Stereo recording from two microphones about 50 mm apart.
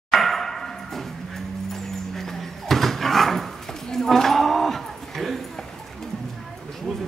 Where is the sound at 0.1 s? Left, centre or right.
Centre.